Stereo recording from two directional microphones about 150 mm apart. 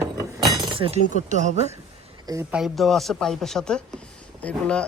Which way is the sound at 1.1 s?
55° right (ahead or behind).